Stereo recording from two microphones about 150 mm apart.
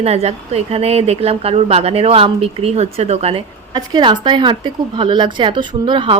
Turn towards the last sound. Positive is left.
turn(degrees=-30)  # may be behind; listen again after turning